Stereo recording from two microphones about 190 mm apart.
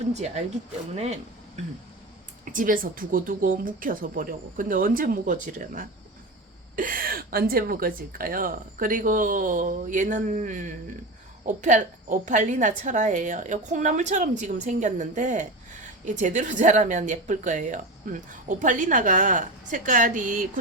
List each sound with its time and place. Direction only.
0.9 s a woman's voice: 35° right (ahead or behind)
2.4 s a woman's voice: 45° right (ahead or behind)